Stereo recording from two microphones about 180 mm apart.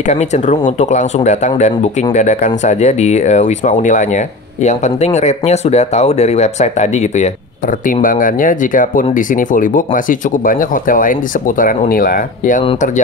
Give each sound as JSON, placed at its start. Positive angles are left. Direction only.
{"t": 0.1, "sound": "speech", "side_deg": 40}